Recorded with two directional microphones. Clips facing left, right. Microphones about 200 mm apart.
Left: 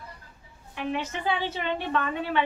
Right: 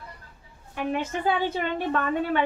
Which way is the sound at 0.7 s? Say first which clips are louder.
Right 3 dB; 45° right (ahead or behind).